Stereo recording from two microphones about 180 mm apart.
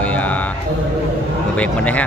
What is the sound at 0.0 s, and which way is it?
Speech, 10° left (ahead or behind).